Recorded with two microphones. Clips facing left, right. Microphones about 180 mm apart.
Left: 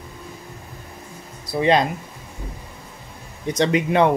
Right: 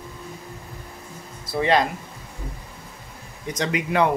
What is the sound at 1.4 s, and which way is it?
Speech, 20° left (ahead or behind).